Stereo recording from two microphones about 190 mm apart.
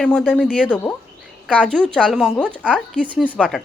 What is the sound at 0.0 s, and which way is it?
Speech, 5° left (ahead or behind).